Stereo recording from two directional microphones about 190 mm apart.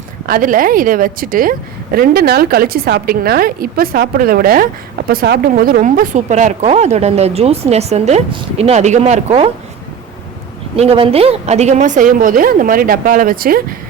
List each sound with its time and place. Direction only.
0.3 s a woman's voice: 45° right (ahead or behind)
10.8 s a woman's voice: 30° right (ahead or behind); by 13.7 s 50° right (ahead or behind)